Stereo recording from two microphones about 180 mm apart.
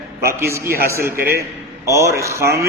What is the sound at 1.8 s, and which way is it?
Speech, 15° right (ahead or behind).